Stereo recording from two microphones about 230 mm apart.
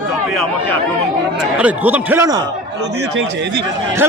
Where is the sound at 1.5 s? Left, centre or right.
Centre.